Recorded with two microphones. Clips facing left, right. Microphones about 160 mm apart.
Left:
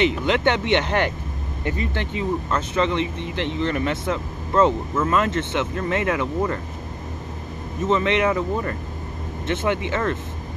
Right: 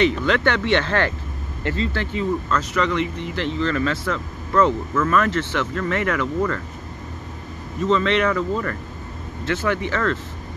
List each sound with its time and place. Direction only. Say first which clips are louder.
0.0 s speech: right 1 dB; 20° left (ahead or behind)
7.8 s speech: right 1 dB; 20° left (ahead or behind)